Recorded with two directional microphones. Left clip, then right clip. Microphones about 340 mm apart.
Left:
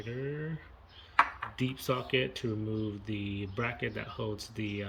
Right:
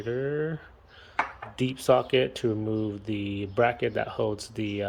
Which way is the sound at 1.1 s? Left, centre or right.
Centre.